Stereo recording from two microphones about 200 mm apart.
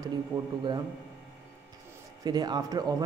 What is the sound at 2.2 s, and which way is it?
Speech, 20° right (ahead or behind).